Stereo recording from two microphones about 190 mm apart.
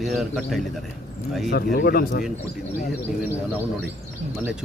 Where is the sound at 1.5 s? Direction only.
50° left (ahead or behind).